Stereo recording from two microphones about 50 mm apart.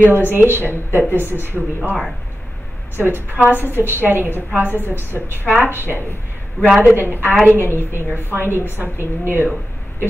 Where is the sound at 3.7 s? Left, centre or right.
Right.